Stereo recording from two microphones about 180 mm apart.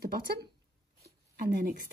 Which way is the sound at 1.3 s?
50° right (ahead or behind).